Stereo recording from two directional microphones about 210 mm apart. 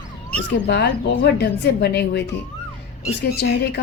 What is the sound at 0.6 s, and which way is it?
Speech, 55° left (ahead or behind).